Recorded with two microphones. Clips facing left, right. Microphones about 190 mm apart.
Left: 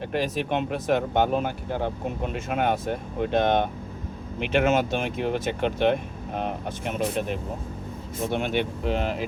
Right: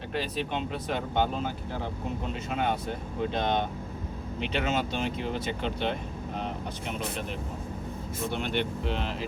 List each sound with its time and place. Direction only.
0.1 s speech: 55° left (ahead or behind)